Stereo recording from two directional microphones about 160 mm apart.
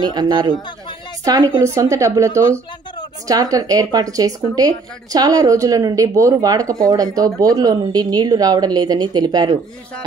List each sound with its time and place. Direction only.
0.1 s speech: 25° right (ahead or behind)